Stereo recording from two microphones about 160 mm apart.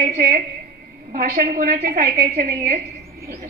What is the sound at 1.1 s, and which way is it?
A woman's voice, 65° right (ahead or behind).